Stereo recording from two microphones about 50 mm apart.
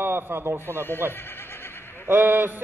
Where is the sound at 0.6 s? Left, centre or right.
Left.